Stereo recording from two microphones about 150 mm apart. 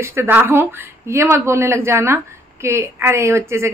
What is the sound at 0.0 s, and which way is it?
A woman's voice, 15° right (ahead or behind).